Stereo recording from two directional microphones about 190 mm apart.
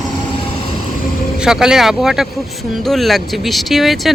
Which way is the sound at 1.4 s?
5° right (ahead or behind).